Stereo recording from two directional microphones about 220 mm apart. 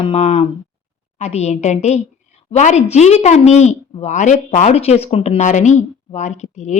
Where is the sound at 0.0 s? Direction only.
30° left (ahead or behind).